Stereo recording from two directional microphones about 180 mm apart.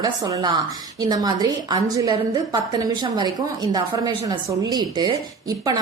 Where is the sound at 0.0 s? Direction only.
20° right (ahead or behind).